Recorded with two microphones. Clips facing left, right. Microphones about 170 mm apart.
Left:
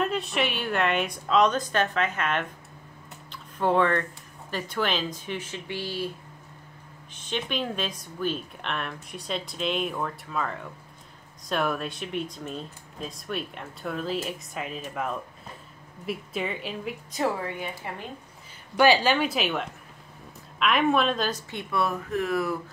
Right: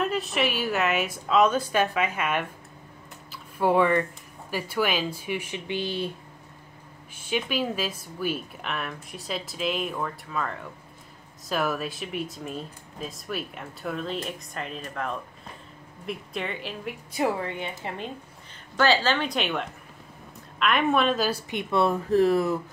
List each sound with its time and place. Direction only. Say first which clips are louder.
0.0 s speech: right 1 dB; centre (ahead or behind)
3.3 s a sound: right 2 dB; 10° right (ahead or behind)
4.5 s a woman's voice: right 2 dB; 10° right (ahead or behind)
7.2 s speech: right 3 dB; 10° right (ahead or behind)
17.2 s a woman's voice: right 1 dB; 20° right (ahead or behind)
18.8 s a woman's voice: left 2 dB; 15° left (ahead or behind); by 22.6 s 30° right (ahead or behind)